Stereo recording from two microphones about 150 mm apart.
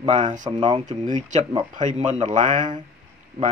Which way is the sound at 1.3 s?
55° right (ahead or behind).